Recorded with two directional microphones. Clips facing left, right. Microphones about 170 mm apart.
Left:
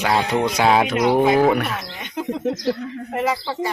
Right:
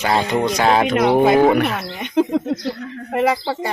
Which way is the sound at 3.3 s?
55° right (ahead or behind).